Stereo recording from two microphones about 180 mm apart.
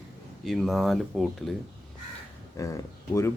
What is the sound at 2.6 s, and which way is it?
Speech, 20° left (ahead or behind).